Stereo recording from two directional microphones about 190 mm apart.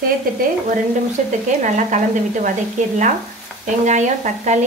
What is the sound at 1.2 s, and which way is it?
Speech, 40° right (ahead or behind).